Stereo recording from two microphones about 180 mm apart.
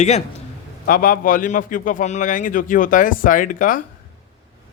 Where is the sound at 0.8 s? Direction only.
50° left (ahead or behind).